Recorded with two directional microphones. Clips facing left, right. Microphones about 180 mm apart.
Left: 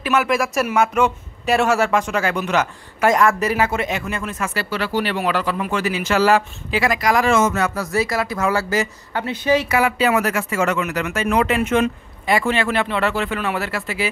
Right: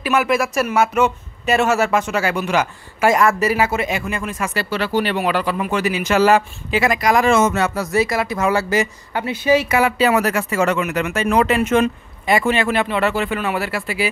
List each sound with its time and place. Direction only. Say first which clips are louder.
0.0 s speech: right 1 dB; 5° right (ahead or behind)
4.6 s speech: right 3 dB; 25° right (ahead or behind); by 9.7 s 10° right (ahead or behind)
9.7 s speech: right 2 dB; 30° right (ahead or behind)
10.8 s speech: right 2 dB; 20° right (ahead or behind); by 11.9 s 40° right (ahead or behind)
12.3 s speech: right 2 dB; 15° right (ahead or behind)